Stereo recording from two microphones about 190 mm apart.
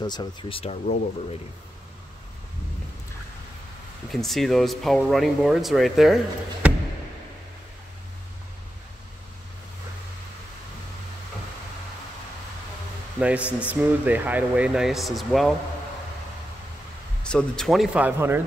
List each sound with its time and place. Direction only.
0.0 s speech: 25° left (ahead or behind)
4.1 s speech: centre (ahead or behind)
13.2 s speech: 5° right (ahead or behind)
17.2 s speech: 5° left (ahead or behind)